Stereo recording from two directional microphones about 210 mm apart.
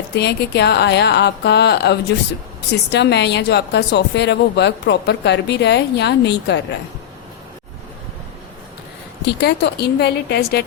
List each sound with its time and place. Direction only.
0.2 s speech: 55° left (ahead or behind)
9.2 s speech: 50° left (ahead or behind)